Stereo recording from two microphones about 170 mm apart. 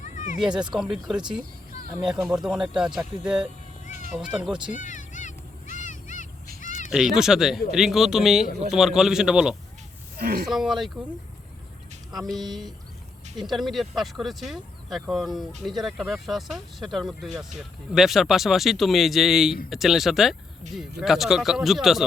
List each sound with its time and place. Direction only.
0.0 s cat: 45° left (ahead or behind)
0.3 s speech: 5° right (ahead or behind)
4.7 s a sound: 45° left (ahead or behind)
6.6 s goose: 50° left (ahead or behind)
6.9 s speech: 5° right (ahead or behind)
10.2 s speech: 65° right (ahead or behind)
10.5 s speech: centre (ahead or behind)
12.1 s speech: centre (ahead or behind)